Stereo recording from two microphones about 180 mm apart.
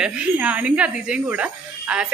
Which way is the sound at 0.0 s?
5° right (ahead or behind).